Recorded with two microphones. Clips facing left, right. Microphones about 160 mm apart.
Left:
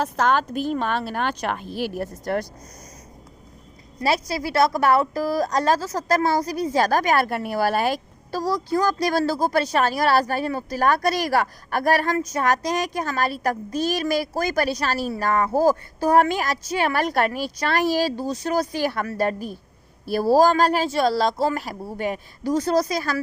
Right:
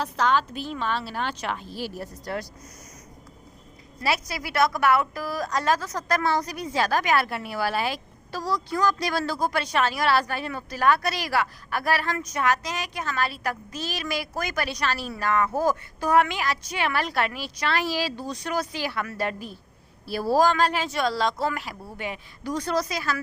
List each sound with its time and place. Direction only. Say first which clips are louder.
0.0 s a woman's voice: left 3 dB; 50° left (ahead or behind)
4.0 s a woman's voice: left 5 dB; 35° left (ahead or behind)